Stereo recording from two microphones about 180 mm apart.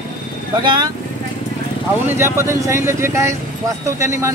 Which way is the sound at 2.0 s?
15° right (ahead or behind).